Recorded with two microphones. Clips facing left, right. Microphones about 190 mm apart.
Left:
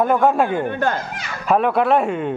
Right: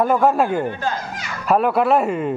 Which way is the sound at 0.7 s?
60° left (ahead or behind).